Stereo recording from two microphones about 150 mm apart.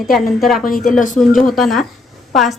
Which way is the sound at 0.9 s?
60° left (ahead or behind).